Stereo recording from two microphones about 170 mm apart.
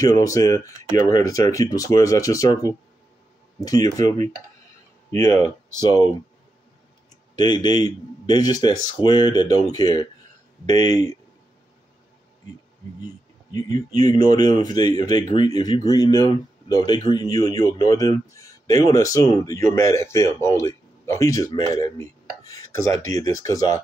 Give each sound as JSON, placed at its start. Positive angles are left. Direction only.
{"t": 0.0, "sound": "speech", "side_deg": 20}
{"t": 7.3, "sound": "speech", "side_deg": 25}
{"t": 13.0, "sound": "speech", "side_deg": 20}